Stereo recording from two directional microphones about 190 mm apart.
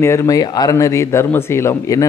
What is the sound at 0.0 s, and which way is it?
Speech, 15° left (ahead or behind).